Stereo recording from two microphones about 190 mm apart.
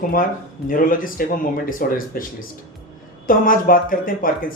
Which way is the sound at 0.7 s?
45° left (ahead or behind).